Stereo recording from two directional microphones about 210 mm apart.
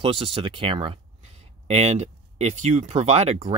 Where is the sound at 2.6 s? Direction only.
30° right (ahead or behind).